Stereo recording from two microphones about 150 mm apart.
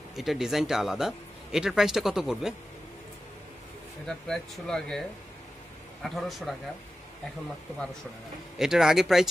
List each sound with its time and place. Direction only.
0.1 s speech: centre (ahead or behind)
4.0 s speech: 5° left (ahead or behind)
6.0 s speech: centre (ahead or behind)
8.5 s speech: 5° right (ahead or behind)